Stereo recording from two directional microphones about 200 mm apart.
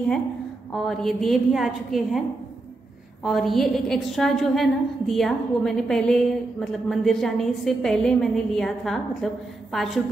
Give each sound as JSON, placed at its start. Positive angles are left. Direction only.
{"t": 0.8, "sound": "a woman's voice", "side_deg": 0}
{"t": 3.3, "sound": "a woman's voice", "side_deg": 0}